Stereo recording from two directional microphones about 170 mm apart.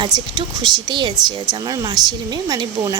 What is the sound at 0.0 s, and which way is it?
Speech, 25° right (ahead or behind).